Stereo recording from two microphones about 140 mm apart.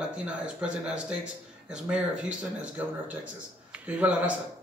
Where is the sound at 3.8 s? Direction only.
10° right (ahead or behind).